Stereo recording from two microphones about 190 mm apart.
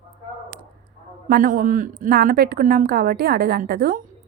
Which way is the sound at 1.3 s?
45° right (ahead or behind).